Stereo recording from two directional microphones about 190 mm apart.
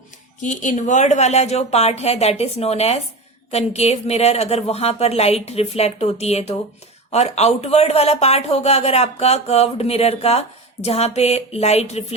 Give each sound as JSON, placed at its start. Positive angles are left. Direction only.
{"t": 0.4, "sound": "speech", "side_deg": 40}